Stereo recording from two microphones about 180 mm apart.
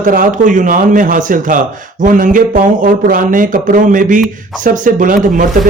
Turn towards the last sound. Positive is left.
turn(degrees=-45)  # may be behind; listen again after turning